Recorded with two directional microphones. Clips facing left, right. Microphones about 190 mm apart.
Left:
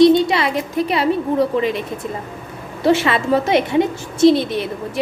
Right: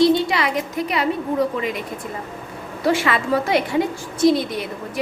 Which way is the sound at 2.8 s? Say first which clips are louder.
Left 4 dB; 25° left (ahead or behind).